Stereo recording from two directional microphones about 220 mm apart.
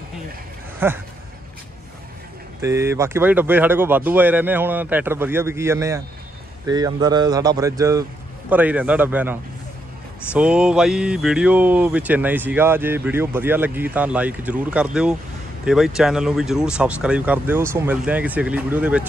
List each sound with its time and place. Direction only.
0.7 s speech: 10° right (ahead or behind)
2.6 s speech: 10° right (ahead or behind)